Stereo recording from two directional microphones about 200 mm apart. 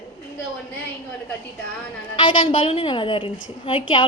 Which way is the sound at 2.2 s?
25° left (ahead or behind).